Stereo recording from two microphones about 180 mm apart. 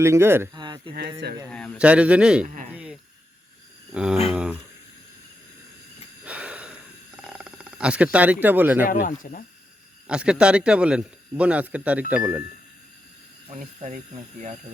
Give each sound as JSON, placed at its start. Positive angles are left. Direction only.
{"t": 0.0, "sound": "a man's voice", "side_deg": -15}
{"t": 0.5, "sound": "a sound", "side_deg": -25}
{"t": 1.5, "sound": "speech", "side_deg": 5}
{"t": 1.8, "sound": "a man's voice", "side_deg": -5}
{"t": 2.7, "sound": "a sound", "side_deg": -5}
{"t": 3.9, "sound": "speech", "side_deg": -5}
{"t": 6.2, "sound": "a sound", "side_deg": -5}
{"t": 7.2, "sound": "speech", "side_deg": -5}
{"t": 8.9, "sound": "speech", "side_deg": 45}
{"t": 10.1, "sound": "a man's voice", "side_deg": -5}
{"t": 13.5, "sound": "speech", "side_deg": -45}